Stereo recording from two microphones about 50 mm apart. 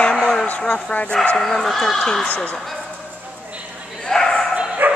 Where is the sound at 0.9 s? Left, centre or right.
Left.